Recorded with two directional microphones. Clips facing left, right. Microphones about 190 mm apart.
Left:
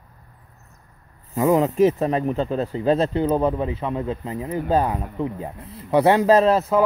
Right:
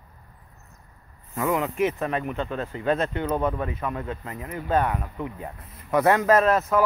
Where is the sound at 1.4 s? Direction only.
35° left (ahead or behind).